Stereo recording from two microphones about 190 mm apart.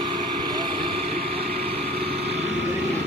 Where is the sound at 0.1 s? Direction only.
25° right (ahead or behind).